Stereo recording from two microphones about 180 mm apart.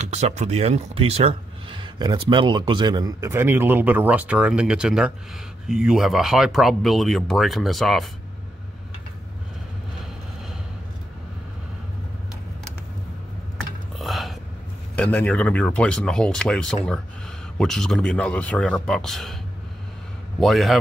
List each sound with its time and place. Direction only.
0.0 s speech: 40° right (ahead or behind); by 8.1 s centre (ahead or behind)
13.6 s computer keyboard: centre (ahead or behind)
15.0 s speech: 5° left (ahead or behind)
20.3 s speech: centre (ahead or behind)